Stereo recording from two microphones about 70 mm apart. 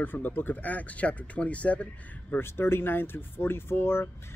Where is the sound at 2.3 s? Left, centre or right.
Left.